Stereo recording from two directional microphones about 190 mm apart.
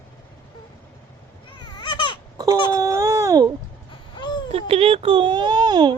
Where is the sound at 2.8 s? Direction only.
15° right (ahead or behind).